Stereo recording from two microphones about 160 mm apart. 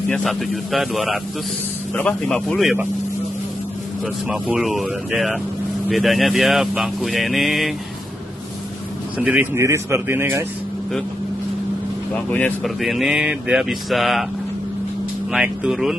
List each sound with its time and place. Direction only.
0.1 s speech: centre (ahead or behind)
4.3 s speech: 5° right (ahead or behind)
9.2 s speech: 10° right (ahead or behind)
12.3 s speech: 10° left (ahead or behind)
12.6 s speech: centre (ahead or behind)
15.3 s speech: 5° right (ahead or behind)